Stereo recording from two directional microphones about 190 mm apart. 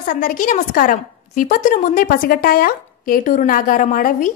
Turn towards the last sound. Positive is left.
turn(degrees=45)  # may be behind; listen again after turning